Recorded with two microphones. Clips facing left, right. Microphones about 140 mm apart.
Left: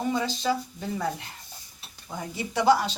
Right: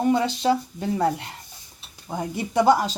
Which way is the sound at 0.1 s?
65° right (ahead or behind).